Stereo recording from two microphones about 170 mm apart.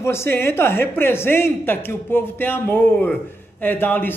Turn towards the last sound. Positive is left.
turn(degrees=10)  # may be behind; listen again after turning